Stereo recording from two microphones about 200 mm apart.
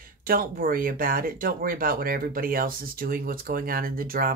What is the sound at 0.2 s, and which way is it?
Speech, 45° right (ahead or behind).